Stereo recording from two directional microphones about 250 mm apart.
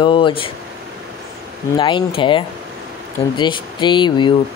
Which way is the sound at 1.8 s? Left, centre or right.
Centre.